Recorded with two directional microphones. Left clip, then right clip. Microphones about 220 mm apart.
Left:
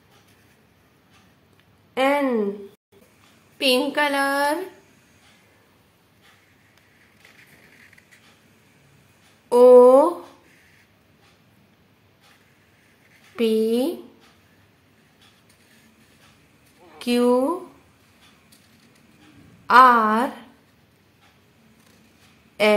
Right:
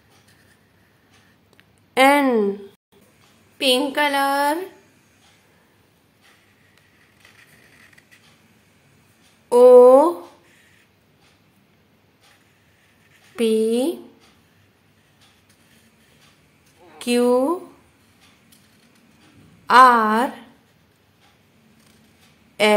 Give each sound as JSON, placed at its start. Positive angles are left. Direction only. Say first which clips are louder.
{"t": 2.0, "sound": "a woman's voice", "louder": "right 5 dB", "side_deg": -25}
{"t": 3.5, "sound": "a woman's voice", "louder": "right 1 dB", "side_deg": -10}
{"t": 9.5, "sound": "a sound", "louder": "right 2 dB", "side_deg": -10}
{"t": 13.4, "sound": "a sound", "louder": "right 1 dB", "side_deg": -10}
{"t": 13.7, "sound": "speech", "louder": "right 2 dB", "side_deg": -10}
{"t": 16.8, "sound": "a woman's voice", "louder": "right 1 dB", "side_deg": -10}
{"t": 19.6, "sound": "speech", "louder": "right 1 dB", "side_deg": -10}